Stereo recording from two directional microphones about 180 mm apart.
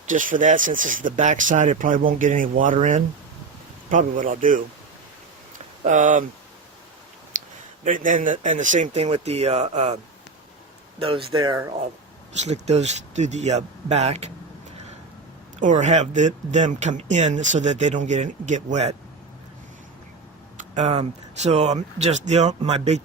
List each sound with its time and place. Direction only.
0.1 s speech: 45° right (ahead or behind)
5.5 s a sound: 45° right (ahead or behind)
7.3 s a sound: 45° right (ahead or behind)
7.9 s speech: 45° right (ahead or behind)
11.0 s speech: 30° right (ahead or behind)
12.4 s speech: 35° right (ahead or behind)
15.6 s speech: 40° right (ahead or behind)
20.6 s speech: 40° right (ahead or behind)